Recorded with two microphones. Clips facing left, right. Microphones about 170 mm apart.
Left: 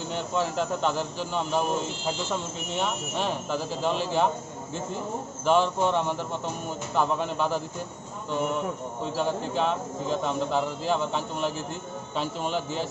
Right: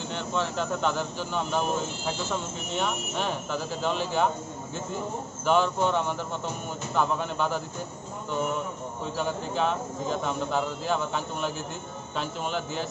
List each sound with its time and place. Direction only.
0.1 s speech: 5° left (ahead or behind)
2.7 s speech: centre (ahead or behind)
5.4 s speech: centre (ahead or behind)
9.1 s speech: centre (ahead or behind)